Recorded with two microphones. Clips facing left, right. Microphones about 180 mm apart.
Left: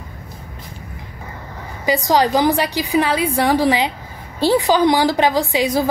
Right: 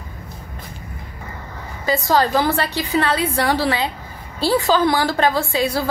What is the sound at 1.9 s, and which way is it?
A woman's voice, 15° left (ahead or behind).